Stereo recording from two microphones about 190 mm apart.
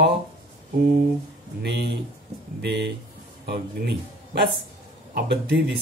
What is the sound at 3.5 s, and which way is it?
Speech, 60° right (ahead or behind).